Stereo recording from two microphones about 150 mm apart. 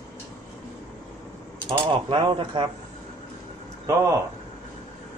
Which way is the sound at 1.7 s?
30° right (ahead or behind).